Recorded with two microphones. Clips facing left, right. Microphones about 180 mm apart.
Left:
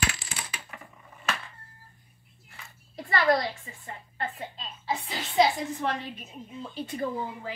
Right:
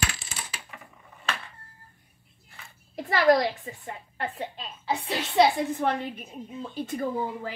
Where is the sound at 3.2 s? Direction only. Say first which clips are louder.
Right 5 dB; 65° right (ahead or behind).